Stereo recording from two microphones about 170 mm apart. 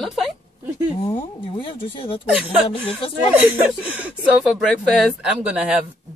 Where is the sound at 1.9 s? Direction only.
30° left (ahead or behind).